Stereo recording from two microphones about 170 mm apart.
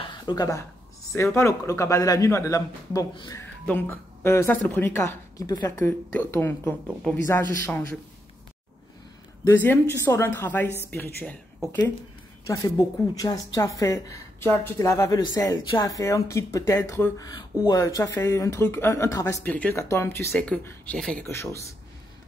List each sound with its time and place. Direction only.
0.0 s a sound: 25° left (ahead or behind)
1.1 s speech: 15° left (ahead or behind)
9.5 s speech: 15° left (ahead or behind)
12.4 s speech: 20° left (ahead or behind)